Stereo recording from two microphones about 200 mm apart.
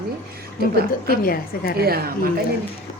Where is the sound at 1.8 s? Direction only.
50° right (ahead or behind).